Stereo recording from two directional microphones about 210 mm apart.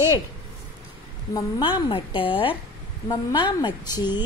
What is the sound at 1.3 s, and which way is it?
A woman's voice, 25° left (ahead or behind).